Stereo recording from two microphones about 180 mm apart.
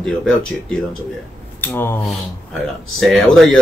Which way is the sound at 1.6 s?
10° left (ahead or behind).